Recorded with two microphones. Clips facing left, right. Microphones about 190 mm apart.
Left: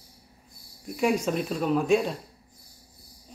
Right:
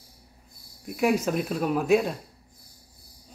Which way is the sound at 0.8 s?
5° right (ahead or behind).